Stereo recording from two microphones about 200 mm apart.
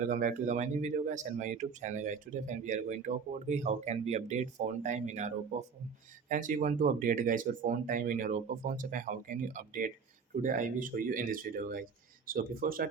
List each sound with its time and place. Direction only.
0.0 s speech: 40° right (ahead or behind)